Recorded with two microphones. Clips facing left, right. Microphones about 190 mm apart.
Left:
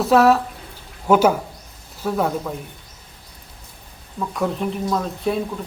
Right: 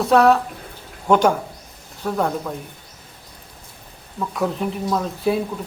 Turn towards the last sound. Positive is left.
turn(degrees=-5)  # may be behind; listen again after turning